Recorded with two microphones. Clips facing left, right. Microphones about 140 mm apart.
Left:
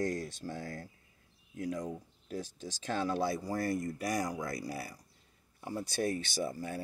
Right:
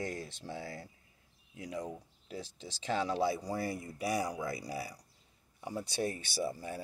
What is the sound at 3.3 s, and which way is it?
Speech, 15° right (ahead or behind).